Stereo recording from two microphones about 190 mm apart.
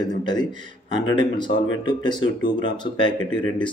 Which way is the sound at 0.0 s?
25° left (ahead or behind).